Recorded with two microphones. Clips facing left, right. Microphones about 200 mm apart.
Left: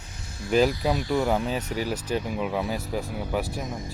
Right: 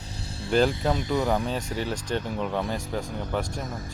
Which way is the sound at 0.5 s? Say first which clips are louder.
Left 1 dB; 5° left (ahead or behind).